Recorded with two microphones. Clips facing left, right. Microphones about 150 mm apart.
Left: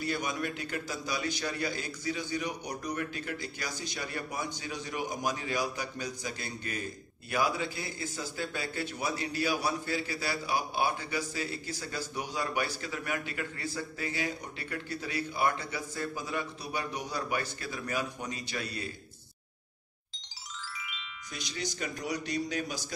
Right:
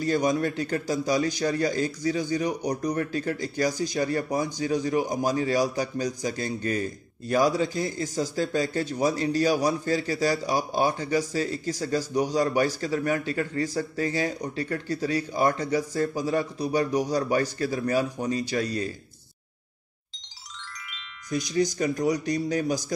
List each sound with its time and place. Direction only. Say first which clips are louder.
0.0 s a man's voice: right 10 dB; 45° right (ahead or behind)
21.7 s a man's voice: right 10 dB; 35° right (ahead or behind)